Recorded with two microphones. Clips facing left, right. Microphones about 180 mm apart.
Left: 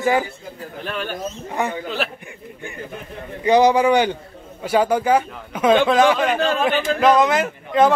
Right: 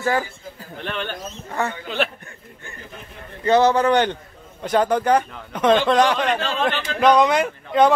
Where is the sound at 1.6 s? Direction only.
15° left (ahead or behind).